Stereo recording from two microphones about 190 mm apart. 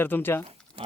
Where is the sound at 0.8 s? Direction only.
30° right (ahead or behind).